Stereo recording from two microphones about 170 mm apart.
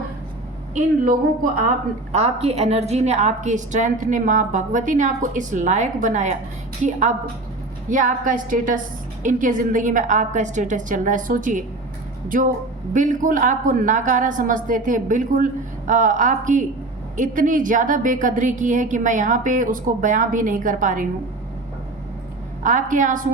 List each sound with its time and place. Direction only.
2.1 s a woman's voice: 40° right (ahead or behind)
22.6 s a woman's voice: 50° right (ahead or behind)